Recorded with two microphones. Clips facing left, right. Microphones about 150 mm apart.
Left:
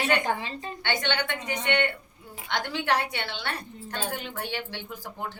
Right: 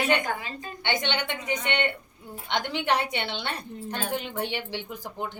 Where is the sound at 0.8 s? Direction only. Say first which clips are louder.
Right 1 dB; 20° right (ahead or behind).